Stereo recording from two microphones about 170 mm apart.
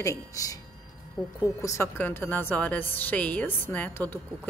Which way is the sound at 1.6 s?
15° left (ahead or behind).